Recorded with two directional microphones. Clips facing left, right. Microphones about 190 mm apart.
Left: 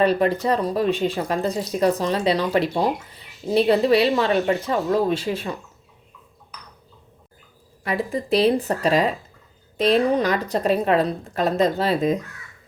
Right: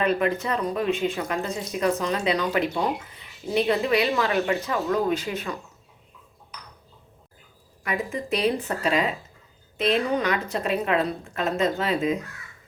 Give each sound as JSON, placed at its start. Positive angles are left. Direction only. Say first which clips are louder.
{"t": 0.0, "sound": "speech", "louder": "left 5 dB", "side_deg": 35}
{"t": 7.9, "sound": "speech", "louder": "left 4 dB", "side_deg": 35}